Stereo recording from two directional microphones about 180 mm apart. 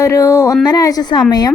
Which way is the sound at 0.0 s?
15° left (ahead or behind).